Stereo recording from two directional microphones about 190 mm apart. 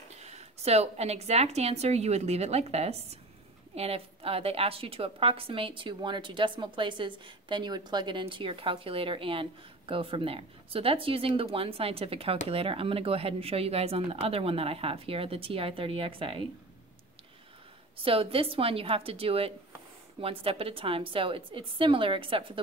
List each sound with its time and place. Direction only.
0.2 s a woman's voice: 35° right (ahead or behind)
18.0 s a woman's voice: 30° right (ahead or behind)